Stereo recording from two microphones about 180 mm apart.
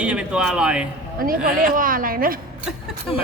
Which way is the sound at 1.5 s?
50° right (ahead or behind).